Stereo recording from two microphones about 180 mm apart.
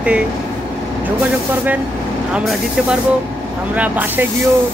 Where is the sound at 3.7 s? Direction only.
10° right (ahead or behind).